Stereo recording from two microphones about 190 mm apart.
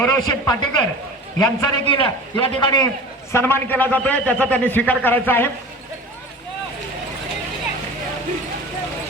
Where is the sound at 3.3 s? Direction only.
10° left (ahead or behind).